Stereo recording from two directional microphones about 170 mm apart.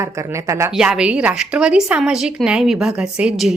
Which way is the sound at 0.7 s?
5° right (ahead or behind).